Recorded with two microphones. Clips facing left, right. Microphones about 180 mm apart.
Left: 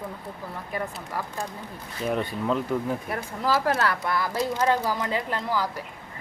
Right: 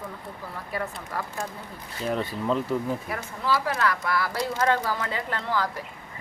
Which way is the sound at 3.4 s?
45° left (ahead or behind).